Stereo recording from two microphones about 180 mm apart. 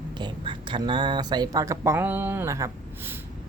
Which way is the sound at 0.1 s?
25° right (ahead or behind).